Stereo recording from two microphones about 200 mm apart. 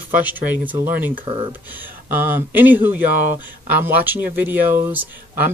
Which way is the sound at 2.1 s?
10° right (ahead or behind).